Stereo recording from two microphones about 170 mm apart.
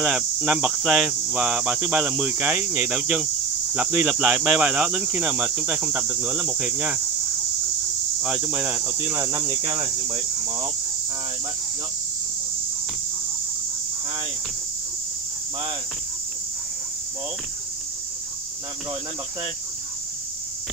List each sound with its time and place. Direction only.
0.0 s speech: 5° right (ahead or behind)
8.2 s speech: 5° right (ahead or behind)
9.7 s cricket: 25° right (ahead or behind)